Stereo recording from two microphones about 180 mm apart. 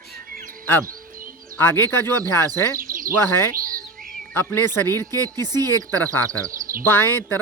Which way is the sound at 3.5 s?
50° right (ahead or behind).